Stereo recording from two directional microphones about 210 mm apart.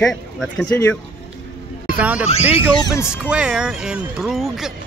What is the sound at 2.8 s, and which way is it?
Speech, 15° left (ahead or behind).